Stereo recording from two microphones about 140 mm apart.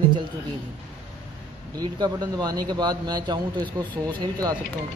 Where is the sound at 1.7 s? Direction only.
30° right (ahead or behind).